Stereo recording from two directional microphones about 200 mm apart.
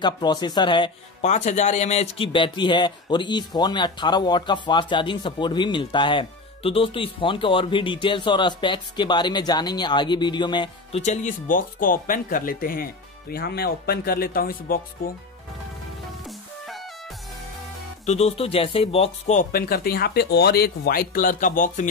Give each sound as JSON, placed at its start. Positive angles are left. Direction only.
{"t": 0.0, "sound": "speech", "side_deg": 20}
{"t": 1.2, "sound": "speech", "side_deg": 35}
{"t": 11.0, "sound": "speech", "side_deg": 35}
{"t": 16.3, "sound": "music", "side_deg": 0}
{"t": 18.0, "sound": "speech", "side_deg": 30}
{"t": 19.5, "sound": "speech", "side_deg": 50}